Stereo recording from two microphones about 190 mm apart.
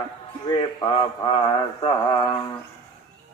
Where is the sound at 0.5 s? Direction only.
25° left (ahead or behind).